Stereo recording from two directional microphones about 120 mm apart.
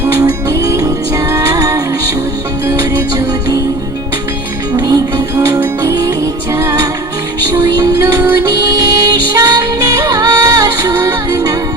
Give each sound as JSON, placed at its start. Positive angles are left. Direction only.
{"t": 0.2, "sound": "music", "side_deg": -25}
{"t": 4.8, "sound": "music", "side_deg": -35}
{"t": 5.5, "sound": "music", "side_deg": -25}